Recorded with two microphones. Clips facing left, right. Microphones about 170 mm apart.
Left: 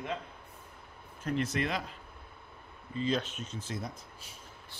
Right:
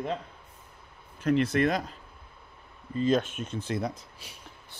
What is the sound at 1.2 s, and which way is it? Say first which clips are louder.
Speech: right 8 dB; 85° right.